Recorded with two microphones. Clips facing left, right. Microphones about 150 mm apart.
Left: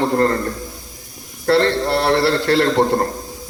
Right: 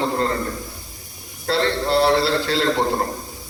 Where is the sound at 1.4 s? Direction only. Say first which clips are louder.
Left 5 dB; 60° left (ahead or behind).